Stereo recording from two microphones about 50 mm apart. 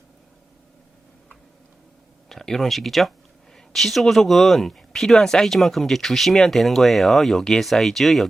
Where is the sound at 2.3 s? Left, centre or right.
Centre.